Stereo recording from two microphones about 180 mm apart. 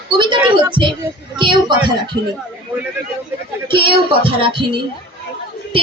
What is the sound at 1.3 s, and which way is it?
Child singing, 25° right (ahead or behind).